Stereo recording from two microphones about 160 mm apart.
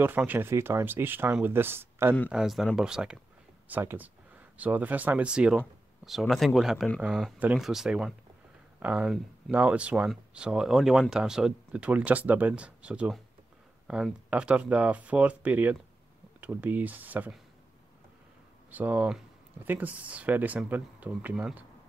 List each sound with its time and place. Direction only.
0.0 s speech: 10° right (ahead or behind)
2.3 s speech: centre (ahead or behind)
18.7 s speech: 10° right (ahead or behind)